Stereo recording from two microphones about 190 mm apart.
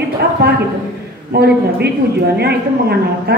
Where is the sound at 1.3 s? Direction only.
60° right (ahead or behind).